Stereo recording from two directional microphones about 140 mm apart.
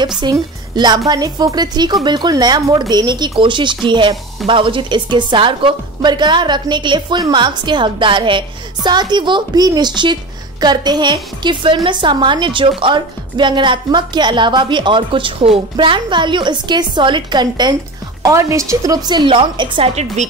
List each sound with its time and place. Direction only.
0.2 s a woman's voice: 30° right (ahead or behind)
20.2 s speech: 55° right (ahead or behind)